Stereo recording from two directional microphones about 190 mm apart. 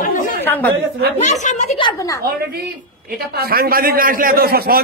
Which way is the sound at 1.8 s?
25° left (ahead or behind).